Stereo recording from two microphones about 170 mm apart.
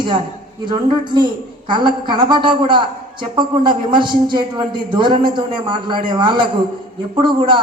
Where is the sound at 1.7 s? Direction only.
25° right (ahead or behind).